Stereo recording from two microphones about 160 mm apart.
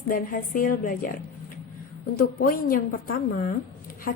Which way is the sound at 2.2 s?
65° left (ahead or behind).